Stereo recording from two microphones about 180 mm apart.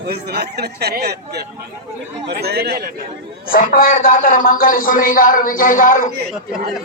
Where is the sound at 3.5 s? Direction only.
50° left (ahead or behind).